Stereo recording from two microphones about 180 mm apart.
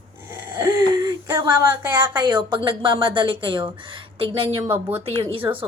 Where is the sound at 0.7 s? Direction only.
20° right (ahead or behind).